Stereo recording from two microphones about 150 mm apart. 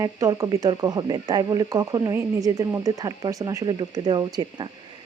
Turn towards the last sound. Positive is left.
turn(degrees=-30)  # may be behind; listen again after turning